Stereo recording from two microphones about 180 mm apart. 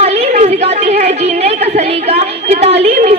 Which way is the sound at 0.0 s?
35° right (ahead or behind).